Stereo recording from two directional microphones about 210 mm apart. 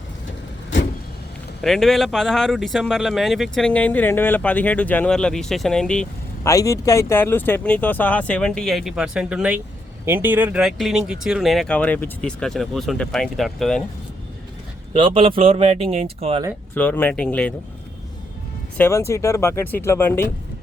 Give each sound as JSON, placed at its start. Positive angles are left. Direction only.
{"t": 1.6, "sound": "speech", "side_deg": 0}
{"t": 6.5, "sound": "speech", "side_deg": 15}
{"t": 14.9, "sound": "speech", "side_deg": -25}
{"t": 16.7, "sound": "speech", "side_deg": 10}
{"t": 18.8, "sound": "speech", "side_deg": 15}